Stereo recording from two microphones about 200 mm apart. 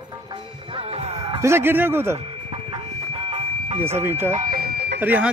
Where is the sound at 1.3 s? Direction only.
15° right (ahead or behind).